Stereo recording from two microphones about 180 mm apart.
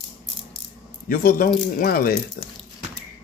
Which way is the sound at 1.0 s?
50° left (ahead or behind).